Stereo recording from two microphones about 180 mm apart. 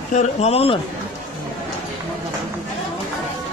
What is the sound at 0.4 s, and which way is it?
Speech, 35° left (ahead or behind).